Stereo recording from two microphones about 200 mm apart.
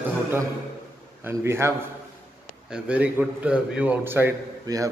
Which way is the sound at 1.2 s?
15° right (ahead or behind).